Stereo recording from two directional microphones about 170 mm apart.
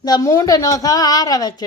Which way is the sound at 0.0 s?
20° left (ahead or behind).